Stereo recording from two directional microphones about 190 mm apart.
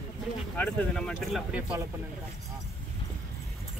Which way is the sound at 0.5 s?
5° left (ahead or behind).